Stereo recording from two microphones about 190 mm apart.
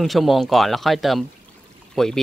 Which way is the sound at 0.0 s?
Centre (ahead or behind).